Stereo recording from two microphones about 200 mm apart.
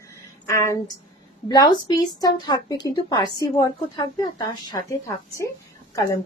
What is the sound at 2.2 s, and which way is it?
Speech, 20° left (ahead or behind).